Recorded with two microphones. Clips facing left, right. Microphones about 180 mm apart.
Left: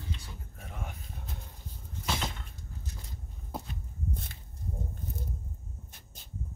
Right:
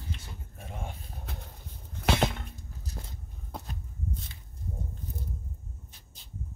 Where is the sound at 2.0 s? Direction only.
70° right (ahead or behind).